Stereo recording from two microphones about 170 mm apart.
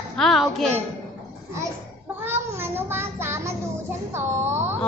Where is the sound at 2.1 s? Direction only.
15° right (ahead or behind).